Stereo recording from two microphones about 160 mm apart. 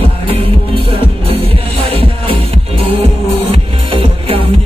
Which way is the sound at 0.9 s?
35° right (ahead or behind).